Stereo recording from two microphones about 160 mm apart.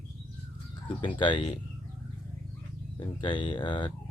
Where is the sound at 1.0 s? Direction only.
30° left (ahead or behind).